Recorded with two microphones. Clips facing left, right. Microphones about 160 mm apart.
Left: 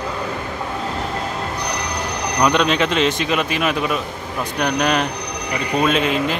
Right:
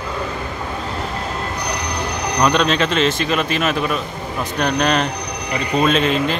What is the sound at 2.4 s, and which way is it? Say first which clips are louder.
A man's voice: even; 15° left (ahead or behind).